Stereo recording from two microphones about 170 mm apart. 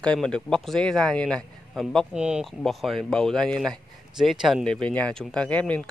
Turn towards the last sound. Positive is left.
turn(degrees=5)  # may be behind; listen again after turning